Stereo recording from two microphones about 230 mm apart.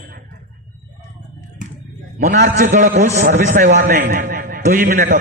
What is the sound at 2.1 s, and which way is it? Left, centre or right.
A man's voice, right.